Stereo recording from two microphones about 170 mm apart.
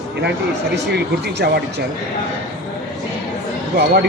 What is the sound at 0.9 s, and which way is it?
Speech, 75° right (ahead or behind).